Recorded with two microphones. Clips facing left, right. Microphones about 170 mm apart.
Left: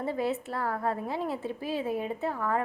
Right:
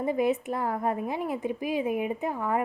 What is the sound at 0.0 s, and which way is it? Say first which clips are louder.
A woman's voice: right 4 dB; 15° right (ahead or behind).